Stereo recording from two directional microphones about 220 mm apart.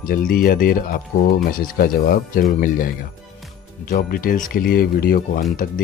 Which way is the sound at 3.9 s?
40° left (ahead or behind).